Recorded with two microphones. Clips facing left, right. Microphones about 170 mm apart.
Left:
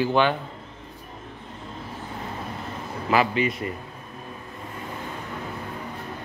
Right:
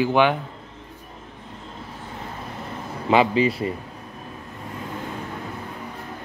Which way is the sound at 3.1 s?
30° right (ahead or behind).